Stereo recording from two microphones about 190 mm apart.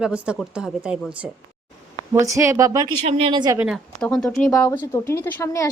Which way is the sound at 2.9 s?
35° right (ahead or behind).